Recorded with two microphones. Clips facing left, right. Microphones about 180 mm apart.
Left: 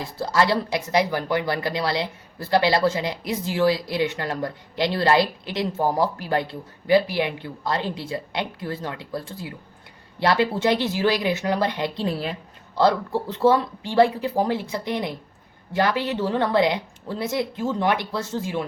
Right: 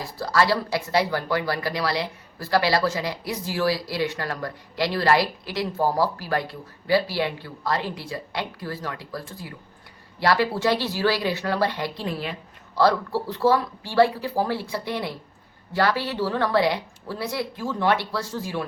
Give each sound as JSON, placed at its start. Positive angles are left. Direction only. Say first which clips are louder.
{"t": 0.2, "sound": "speech", "louder": "left 1 dB", "side_deg": 25}
{"t": 12.0, "sound": "a sound", "louder": "left 3 dB", "side_deg": 35}
{"t": 12.8, "sound": "speech", "louder": "left 1 dB", "side_deg": 20}